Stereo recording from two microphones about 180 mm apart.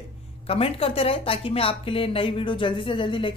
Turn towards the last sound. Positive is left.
turn(degrees=25)  # may be behind; listen again after turning